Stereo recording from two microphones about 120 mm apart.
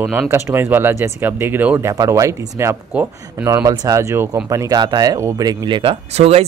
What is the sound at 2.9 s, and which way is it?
Speech, 10° right (ahead or behind).